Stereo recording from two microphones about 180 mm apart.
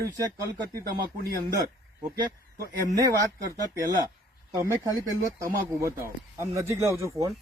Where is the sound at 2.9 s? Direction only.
20° right (ahead or behind).